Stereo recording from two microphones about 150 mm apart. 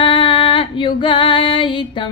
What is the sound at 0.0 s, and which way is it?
Female singing, 35° left (ahead or behind).